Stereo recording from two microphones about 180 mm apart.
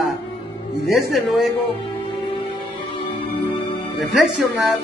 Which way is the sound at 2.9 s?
30° left (ahead or behind).